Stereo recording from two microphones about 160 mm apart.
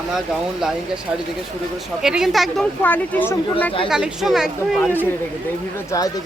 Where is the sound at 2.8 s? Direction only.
10° left (ahead or behind).